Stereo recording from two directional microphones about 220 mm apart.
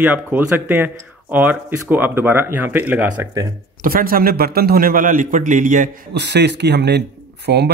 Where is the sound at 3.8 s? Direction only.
40° right (ahead or behind).